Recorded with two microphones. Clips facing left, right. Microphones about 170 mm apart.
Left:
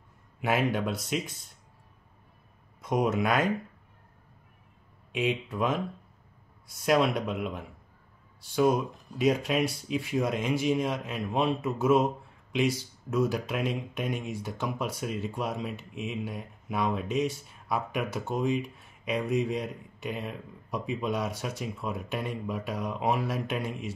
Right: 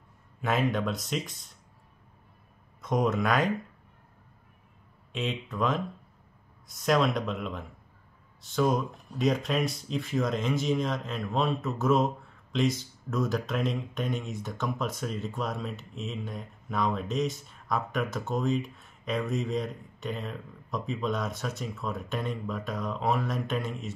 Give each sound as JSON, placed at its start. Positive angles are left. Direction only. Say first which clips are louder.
{"t": 0.4, "sound": "speech", "louder": "left 1 dB", "side_deg": 10}
{"t": 2.8, "sound": "speech", "louder": "even", "side_deg": 10}
{"t": 5.1, "sound": "speech", "louder": "left 4 dB", "side_deg": 10}
{"t": 6.8, "sound": "speech", "louder": "left 1 dB", "side_deg": 5}